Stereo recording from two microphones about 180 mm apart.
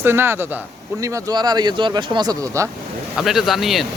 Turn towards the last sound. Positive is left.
turn(degrees=0)  # may be behind; listen again after turning